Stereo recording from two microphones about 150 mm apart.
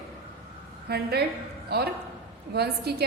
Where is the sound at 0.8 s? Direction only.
90° right.